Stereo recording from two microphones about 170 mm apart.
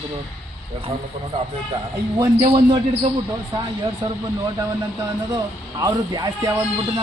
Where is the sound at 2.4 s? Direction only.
25° right (ahead or behind).